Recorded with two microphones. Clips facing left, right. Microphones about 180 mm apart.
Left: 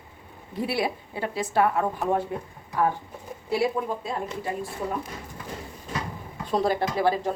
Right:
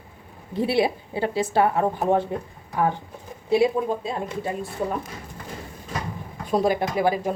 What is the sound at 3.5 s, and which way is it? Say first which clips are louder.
Speech: right 5 dB; 20° right (ahead or behind).